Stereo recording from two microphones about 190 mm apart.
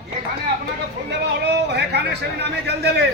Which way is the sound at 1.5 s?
60° right (ahead or behind).